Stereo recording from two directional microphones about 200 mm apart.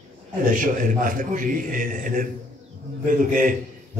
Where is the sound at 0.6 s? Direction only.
45° right (ahead or behind).